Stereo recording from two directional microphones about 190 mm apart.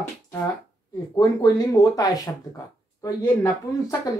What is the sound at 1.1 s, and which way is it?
Speech, 20° left (ahead or behind).